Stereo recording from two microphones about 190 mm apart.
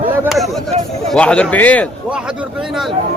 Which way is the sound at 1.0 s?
5° left (ahead or behind).